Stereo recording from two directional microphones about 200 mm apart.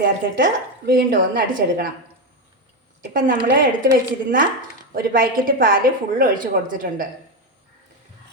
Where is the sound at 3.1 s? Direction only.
45° right (ahead or behind).